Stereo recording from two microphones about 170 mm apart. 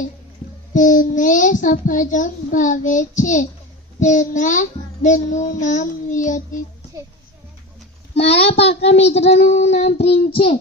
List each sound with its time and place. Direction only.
0.7 s a child's voice: 50° left (ahead or behind)
8.2 s speech: 35° left (ahead or behind)